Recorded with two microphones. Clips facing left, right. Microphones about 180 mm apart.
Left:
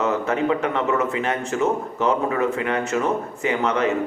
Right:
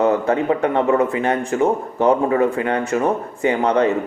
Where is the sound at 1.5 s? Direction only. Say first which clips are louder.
Right 4 dB; 30° right (ahead or behind).